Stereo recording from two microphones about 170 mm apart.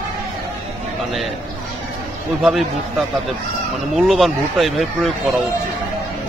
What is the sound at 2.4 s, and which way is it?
Speech, centre (ahead or behind).